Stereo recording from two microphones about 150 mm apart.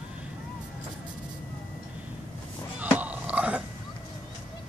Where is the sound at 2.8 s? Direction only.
10° right (ahead or behind).